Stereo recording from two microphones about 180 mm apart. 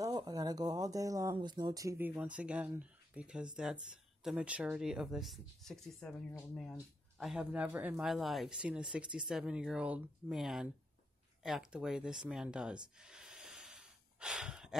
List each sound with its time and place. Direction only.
0.0 s speech: 20° right (ahead or behind); by 12.8 s 5° right (ahead or behind)
13.0 s snort: 5° right (ahead or behind)